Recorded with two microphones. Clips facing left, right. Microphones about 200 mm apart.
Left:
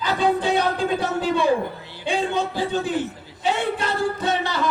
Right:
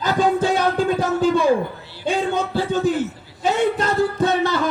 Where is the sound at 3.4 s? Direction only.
45° right (ahead or behind).